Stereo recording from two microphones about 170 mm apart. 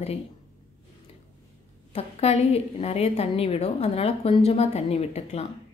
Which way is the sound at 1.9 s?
35° left (ahead or behind).